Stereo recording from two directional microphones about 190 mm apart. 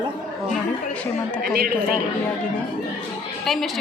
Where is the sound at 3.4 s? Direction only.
Centre (ahead or behind).